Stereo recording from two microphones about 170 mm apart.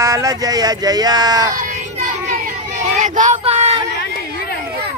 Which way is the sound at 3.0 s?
45° right (ahead or behind).